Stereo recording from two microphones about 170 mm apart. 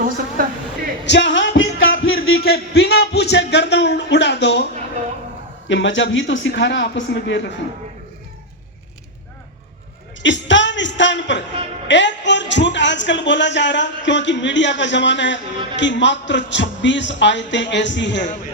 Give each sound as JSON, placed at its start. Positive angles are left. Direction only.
{"t": 0.4, "sound": "a woman's voice", "side_deg": -50}
{"t": 1.0, "sound": "music", "side_deg": 90}
{"t": 5.6, "sound": "speech", "side_deg": 90}
{"t": 10.2, "sound": "speech", "side_deg": 90}